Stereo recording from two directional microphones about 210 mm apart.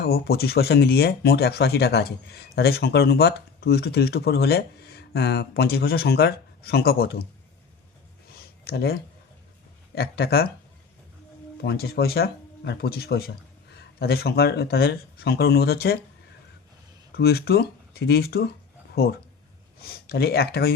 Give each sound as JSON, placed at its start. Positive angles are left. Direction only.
{"t": 0.0, "sound": "speech", "side_deg": 50}
{"t": 8.4, "sound": "a sound", "side_deg": 50}
{"t": 9.9, "sound": "speech", "side_deg": 50}
{"t": 11.6, "sound": "speech", "side_deg": 50}
{"t": 17.1, "sound": "speech", "side_deg": 50}
{"t": 20.1, "sound": "speech", "side_deg": 50}